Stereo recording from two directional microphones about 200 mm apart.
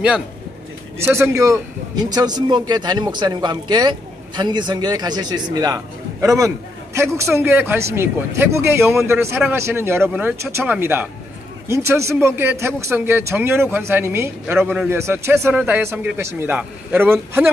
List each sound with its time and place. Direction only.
0.9 s a man's voice: 10° right (ahead or behind)